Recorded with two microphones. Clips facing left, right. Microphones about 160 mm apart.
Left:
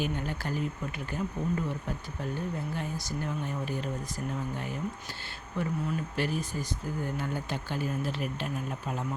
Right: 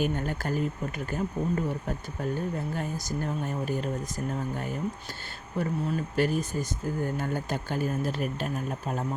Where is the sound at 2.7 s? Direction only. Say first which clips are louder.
Right 3 dB; 45° right (ahead or behind).